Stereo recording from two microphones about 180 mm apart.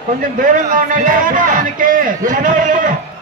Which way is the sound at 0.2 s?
45° right (ahead or behind).